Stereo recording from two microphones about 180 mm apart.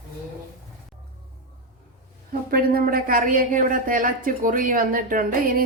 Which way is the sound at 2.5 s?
55° right (ahead or behind).